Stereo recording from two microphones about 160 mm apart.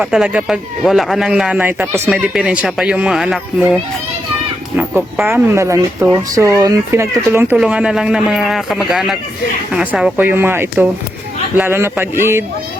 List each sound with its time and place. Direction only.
0.0 s speech: 5° right (ahead or behind)
4.8 s speech: 10° right (ahead or behind)